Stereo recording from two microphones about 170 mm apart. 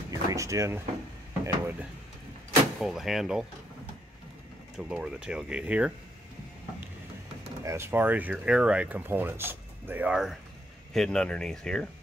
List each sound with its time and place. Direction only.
0.3 s drawer open or close: 20° right (ahead or behind)
1.4 s speech: 10° right (ahead or behind)
4.7 s speech: 5° right (ahead or behind)
7.6 s speech: 15° right (ahead or behind); by 11.9 s 5° left (ahead or behind)